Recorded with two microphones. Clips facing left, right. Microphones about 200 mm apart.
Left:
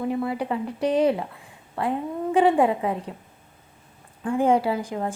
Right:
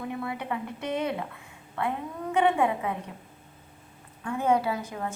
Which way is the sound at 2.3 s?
30° left (ahead or behind).